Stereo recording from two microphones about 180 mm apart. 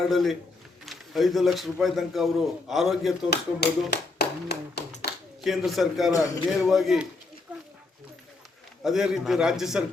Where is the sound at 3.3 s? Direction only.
65° left (ahead or behind).